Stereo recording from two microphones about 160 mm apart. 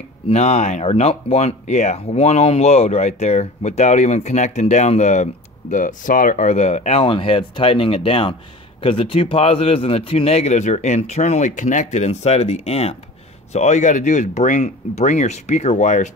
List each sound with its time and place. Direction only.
0.3 s speech: 45° left (ahead or behind)